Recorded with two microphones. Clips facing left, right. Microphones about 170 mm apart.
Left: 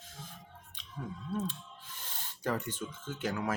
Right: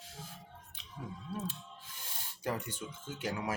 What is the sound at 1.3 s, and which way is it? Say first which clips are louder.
Speech: left 5 dB; 10° right (ahead or behind).